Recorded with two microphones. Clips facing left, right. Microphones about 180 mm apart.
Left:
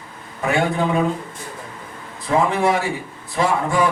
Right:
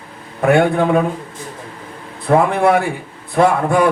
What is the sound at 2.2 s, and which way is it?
A man's voice, 55° right (ahead or behind).